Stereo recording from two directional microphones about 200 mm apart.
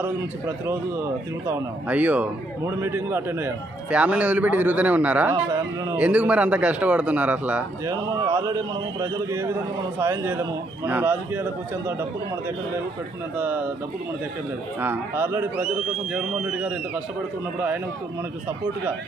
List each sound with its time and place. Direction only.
0.0 s a man's voice: 10° right (ahead or behind)
6.0 s a man's voice: 5° right (ahead or behind)
13.3 s a man's voice: 10° right (ahead or behind)
14.8 s a man's voice: 10° right (ahead or behind)